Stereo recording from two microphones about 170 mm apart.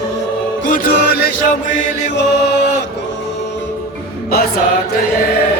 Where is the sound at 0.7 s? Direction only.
55° left (ahead or behind).